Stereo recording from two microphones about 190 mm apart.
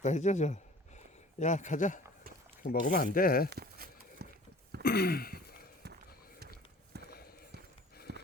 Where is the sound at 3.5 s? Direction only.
55° right (ahead or behind).